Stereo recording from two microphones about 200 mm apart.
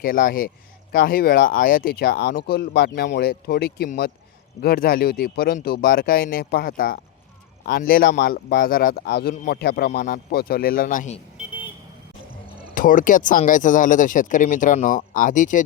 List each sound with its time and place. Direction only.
0.0 s speech: 45° left (ahead or behind)
12.7 s speech: 40° left (ahead or behind)